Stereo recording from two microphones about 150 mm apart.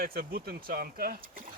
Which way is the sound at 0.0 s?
90° right.